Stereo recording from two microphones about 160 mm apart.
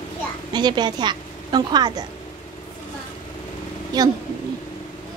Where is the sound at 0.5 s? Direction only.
25° right (ahead or behind).